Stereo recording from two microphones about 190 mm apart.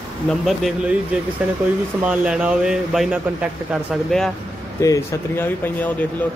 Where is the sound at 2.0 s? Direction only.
5° right (ahead or behind).